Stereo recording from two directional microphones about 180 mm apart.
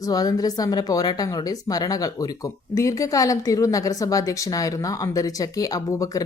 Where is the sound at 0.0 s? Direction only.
20° left (ahead or behind).